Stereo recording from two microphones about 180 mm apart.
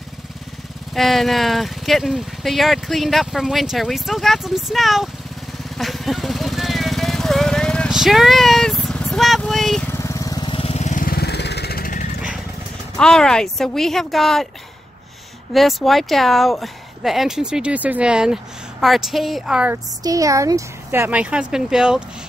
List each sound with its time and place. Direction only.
0.9 s speech: centre (ahead or behind)
5.8 s vehicle: centre (ahead or behind)
9.9 s lawn mower: 15° left (ahead or behind); by 12.1 s 50° left (ahead or behind)
12.9 s speech: 5° left (ahead or behind)
15.5 s speech: centre (ahead or behind)
20.0 s speech: 20° right (ahead or behind); by 22.0 s 5° right (ahead or behind)